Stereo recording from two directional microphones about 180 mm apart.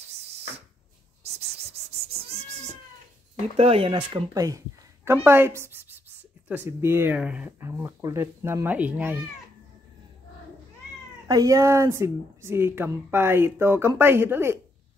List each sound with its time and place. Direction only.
1.5 s a sound: 35° right (ahead or behind)
2.2 s cat: 35° right (ahead or behind)
3.5 s speech: 30° right (ahead or behind); by 9.2 s 10° right (ahead or behind)
11.2 s speech: 20° right (ahead or behind)